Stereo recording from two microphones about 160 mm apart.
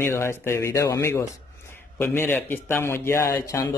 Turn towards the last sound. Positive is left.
turn(degrees=20)  # may be behind; listen again after turning